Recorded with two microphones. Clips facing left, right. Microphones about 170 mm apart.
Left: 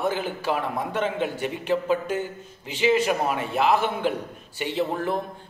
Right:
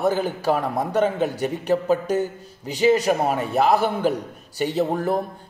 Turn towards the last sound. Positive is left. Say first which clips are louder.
# right 4 dB
turn(degrees=-40)  # may be behind; listen again after turning